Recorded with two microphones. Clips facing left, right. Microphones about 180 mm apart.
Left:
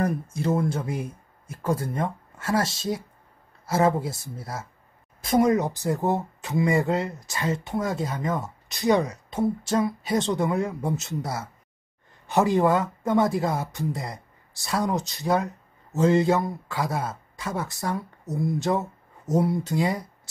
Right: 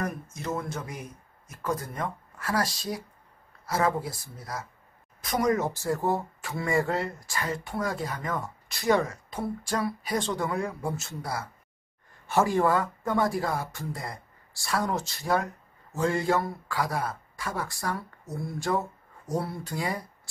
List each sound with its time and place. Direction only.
0.0 s speech: 30° left (ahead or behind)